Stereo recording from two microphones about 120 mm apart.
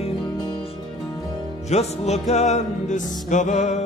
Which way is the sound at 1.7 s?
65° left (ahead or behind).